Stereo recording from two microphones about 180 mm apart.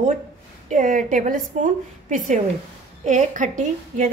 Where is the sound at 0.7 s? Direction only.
45° right (ahead or behind).